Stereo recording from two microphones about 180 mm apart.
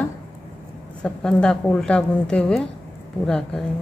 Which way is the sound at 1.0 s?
5° left (ahead or behind).